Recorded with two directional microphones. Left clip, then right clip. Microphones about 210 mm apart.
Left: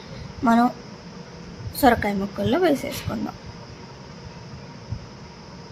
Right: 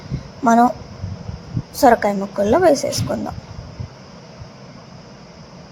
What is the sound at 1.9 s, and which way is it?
Speech, 5° right (ahead or behind).